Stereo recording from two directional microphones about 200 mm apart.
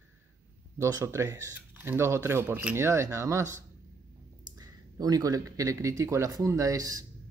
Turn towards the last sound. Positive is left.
turn(degrees=-15)  # may be behind; listen again after turning